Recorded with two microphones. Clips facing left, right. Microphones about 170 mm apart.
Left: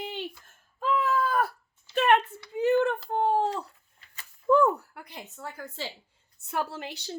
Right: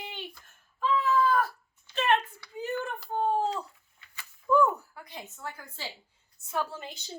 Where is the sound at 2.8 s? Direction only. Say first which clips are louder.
Left 4 dB; 70° left (ahead or behind).